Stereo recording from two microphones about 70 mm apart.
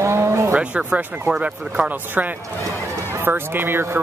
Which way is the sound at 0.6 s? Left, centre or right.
Centre.